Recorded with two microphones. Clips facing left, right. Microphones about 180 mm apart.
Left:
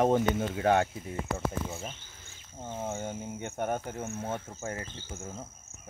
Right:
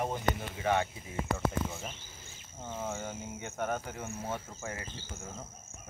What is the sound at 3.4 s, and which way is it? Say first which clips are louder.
Speech: left 2 dB; 50° left (ahead or behind).